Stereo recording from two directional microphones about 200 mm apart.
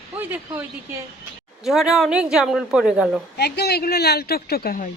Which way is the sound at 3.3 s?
55° left (ahead or behind).